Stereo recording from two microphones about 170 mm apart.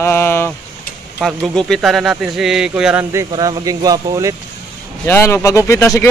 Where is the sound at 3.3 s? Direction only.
25° right (ahead or behind).